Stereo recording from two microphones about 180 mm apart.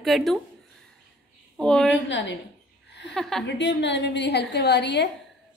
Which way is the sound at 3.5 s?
75° left (ahead or behind).